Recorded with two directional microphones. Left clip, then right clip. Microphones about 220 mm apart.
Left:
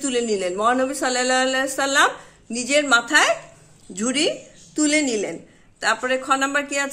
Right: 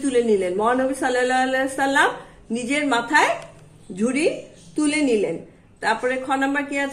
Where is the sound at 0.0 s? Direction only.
50° left (ahead or behind).